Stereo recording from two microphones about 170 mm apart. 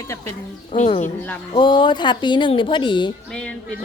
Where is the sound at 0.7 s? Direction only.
40° left (ahead or behind).